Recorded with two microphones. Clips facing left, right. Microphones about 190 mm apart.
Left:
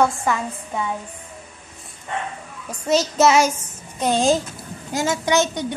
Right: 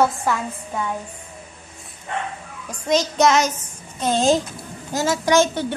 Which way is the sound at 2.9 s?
5° left (ahead or behind).